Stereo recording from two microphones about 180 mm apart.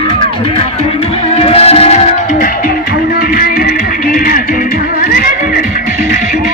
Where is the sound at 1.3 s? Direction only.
35° left (ahead or behind).